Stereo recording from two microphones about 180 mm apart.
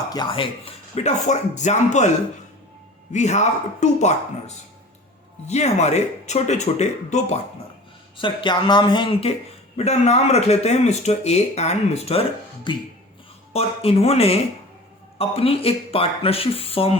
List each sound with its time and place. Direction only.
0.1 s speech: 25° left (ahead or behind)
3.1 s speech: 40° left (ahead or behind)
8.1 s speech: 25° left (ahead or behind)
9.7 s speech: 35° left (ahead or behind)
13.5 s speech: 35° left (ahead or behind)